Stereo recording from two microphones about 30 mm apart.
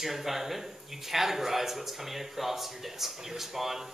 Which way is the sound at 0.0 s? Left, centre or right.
Centre.